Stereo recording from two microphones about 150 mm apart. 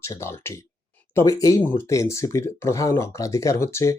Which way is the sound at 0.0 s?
20° left (ahead or behind).